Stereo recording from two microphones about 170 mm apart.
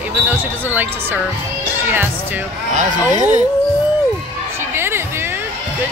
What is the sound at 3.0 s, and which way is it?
Speech, 25° left (ahead or behind).